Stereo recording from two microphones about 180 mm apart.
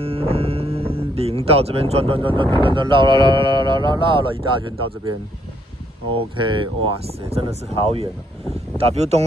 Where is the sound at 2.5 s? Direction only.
25° right (ahead or behind).